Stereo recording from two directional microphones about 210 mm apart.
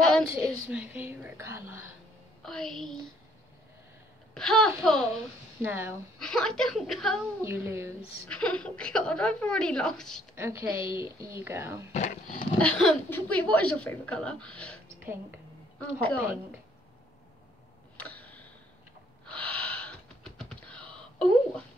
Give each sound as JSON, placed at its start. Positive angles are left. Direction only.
{"t": 0.3, "sound": "speech", "side_deg": -10}
{"t": 2.4, "sound": "speech", "side_deg": 5}
{"t": 4.3, "sound": "speech", "side_deg": 5}
{"t": 5.6, "sound": "speech", "side_deg": -10}
{"t": 6.1, "sound": "speech", "side_deg": 5}
{"t": 7.4, "sound": "speech", "side_deg": -10}
{"t": 8.3, "sound": "speech", "side_deg": 5}
{"t": 10.3, "sound": "speech", "side_deg": -10}
{"t": 11.9, "sound": "speech", "side_deg": 35}
{"t": 12.5, "sound": "speech", "side_deg": 5}
{"t": 15.8, "sound": "speech", "side_deg": 5}
{"t": 17.9, "sound": "a sound", "side_deg": 5}
{"t": 19.2, "sound": "gasp", "side_deg": 5}